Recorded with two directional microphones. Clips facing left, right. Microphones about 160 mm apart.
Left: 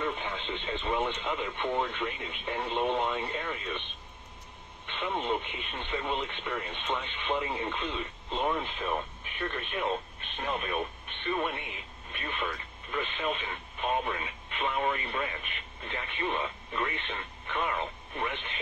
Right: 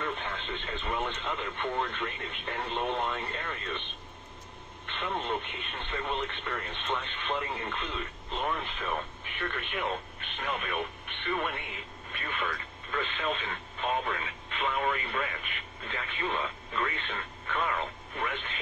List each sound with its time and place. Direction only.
0.0 s radio: 15° left (ahead or behind)
1.6 s speech: 15° left (ahead or behind)
4.8 s speech: 15° left (ahead or behind)
10.3 s speech: 30° left (ahead or behind)